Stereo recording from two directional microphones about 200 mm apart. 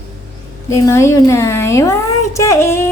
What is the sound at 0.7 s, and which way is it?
A woman's voice, 15° left (ahead or behind).